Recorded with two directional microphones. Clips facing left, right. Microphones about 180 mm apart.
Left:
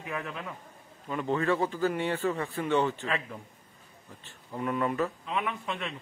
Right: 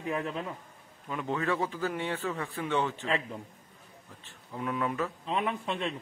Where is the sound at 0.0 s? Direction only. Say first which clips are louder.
Right 4 dB; 30° right (ahead or behind).